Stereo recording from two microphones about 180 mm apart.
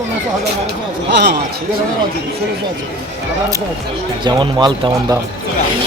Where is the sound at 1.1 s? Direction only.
70° right (ahead or behind).